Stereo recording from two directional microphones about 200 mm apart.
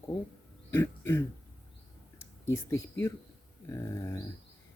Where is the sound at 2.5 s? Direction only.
15° left (ahead or behind).